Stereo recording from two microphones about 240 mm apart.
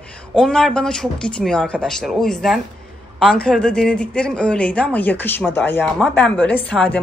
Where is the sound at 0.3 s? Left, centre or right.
Centre.